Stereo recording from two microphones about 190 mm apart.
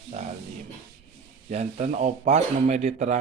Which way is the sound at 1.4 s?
40° right (ahead or behind).